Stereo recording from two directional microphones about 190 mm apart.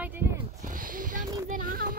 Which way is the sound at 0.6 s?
45° right (ahead or behind).